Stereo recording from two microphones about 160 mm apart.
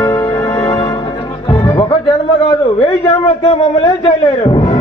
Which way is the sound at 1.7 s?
30° left (ahead or behind).